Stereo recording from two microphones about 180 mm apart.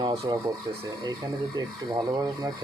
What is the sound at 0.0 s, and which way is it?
Speech, 20° right (ahead or behind).